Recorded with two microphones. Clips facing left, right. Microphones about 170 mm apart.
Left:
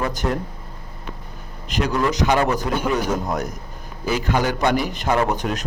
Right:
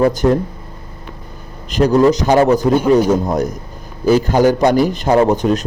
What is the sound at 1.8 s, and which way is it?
A man's voice, 35° right (ahead or behind).